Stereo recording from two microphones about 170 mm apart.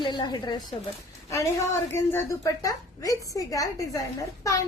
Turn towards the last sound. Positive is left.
turn(degrees=20)  # may be behind; listen again after turning